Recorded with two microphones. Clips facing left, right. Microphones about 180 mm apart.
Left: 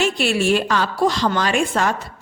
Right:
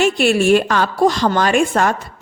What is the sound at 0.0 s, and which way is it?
A woman's voice, 50° right (ahead or behind).